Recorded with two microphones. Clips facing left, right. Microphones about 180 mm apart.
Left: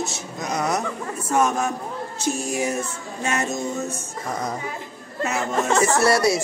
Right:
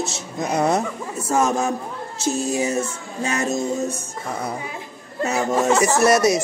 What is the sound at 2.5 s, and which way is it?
Speech, 20° right (ahead or behind).